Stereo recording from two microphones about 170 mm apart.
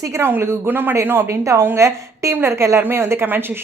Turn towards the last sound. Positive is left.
turn(degrees=-10)  # may be behind; listen again after turning